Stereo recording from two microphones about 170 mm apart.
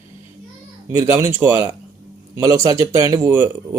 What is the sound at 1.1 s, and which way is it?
A man's voice, 15° right (ahead or behind).